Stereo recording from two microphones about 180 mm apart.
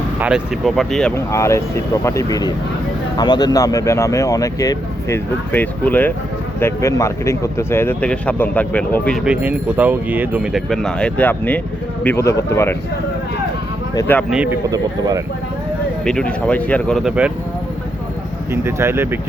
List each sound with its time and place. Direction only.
0.2 s speech: 5° right (ahead or behind)
1.1 s speech: 15° left (ahead or behind)
9.2 s speech: 5° right (ahead or behind); by 12.5 s 15° left (ahead or behind)
14.3 s speech: 5° right (ahead or behind)
14.7 s speech: 20° right (ahead or behind)
16.0 s speech: 5° left (ahead or behind)
18.5 s speech: 15° right (ahead or behind)